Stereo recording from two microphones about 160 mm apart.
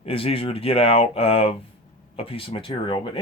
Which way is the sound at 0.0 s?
35° left (ahead or behind).